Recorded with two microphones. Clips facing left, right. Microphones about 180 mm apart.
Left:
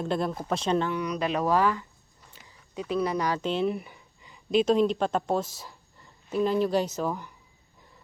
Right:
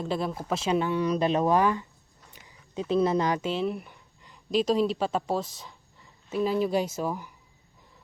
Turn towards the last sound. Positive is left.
turn(degrees=-5)  # may be behind; listen again after turning